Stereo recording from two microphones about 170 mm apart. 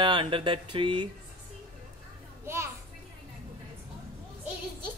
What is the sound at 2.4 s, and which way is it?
Children playing, 15° right (ahead or behind).